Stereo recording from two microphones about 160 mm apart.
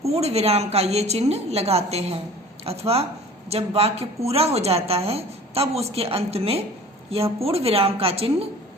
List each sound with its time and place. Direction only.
0.0 s a woman's voice: 40° right (ahead or behind)